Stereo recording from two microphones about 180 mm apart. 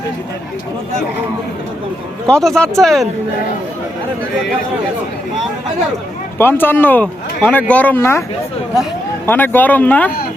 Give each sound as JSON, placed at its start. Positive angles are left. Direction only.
{"t": 2.2, "sound": "speech", "side_deg": 5}
{"t": 6.4, "sound": "speech", "side_deg": 10}
{"t": 9.2, "sound": "speech", "side_deg": 10}